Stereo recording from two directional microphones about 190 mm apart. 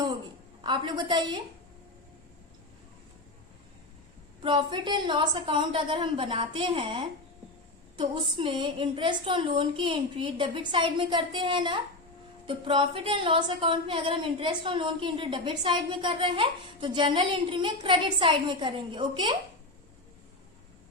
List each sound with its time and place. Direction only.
0.6 s speech: 25° right (ahead or behind)
4.4 s speech: 25° right (ahead or behind)